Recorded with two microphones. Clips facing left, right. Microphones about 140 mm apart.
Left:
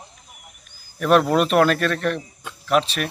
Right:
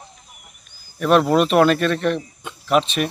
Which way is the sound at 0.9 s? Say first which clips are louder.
Right 1 dB; centre (ahead or behind).